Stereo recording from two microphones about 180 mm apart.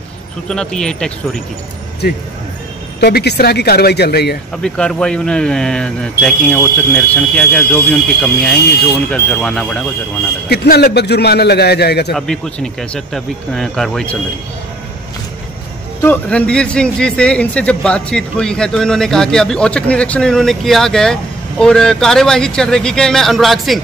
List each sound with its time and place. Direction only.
0.5 s a man's voice: 5° left (ahead or behind)
3.0 s a man's voice: 65° left (ahead or behind)
4.6 s a man's voice: 5° left (ahead or behind)
10.5 s a man's voice: 60° left (ahead or behind)
12.1 s a man's voice: 5° left (ahead or behind)
16.0 s a man's voice: 10° left (ahead or behind)